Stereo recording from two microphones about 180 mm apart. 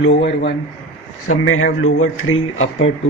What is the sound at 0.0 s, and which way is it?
Speech, 90° left.